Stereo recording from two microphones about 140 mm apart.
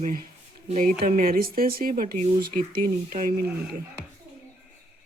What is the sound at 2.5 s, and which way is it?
Speech, 90° right.